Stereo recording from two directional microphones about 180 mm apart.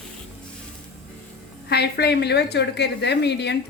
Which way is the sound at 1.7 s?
65° left (ahead or behind).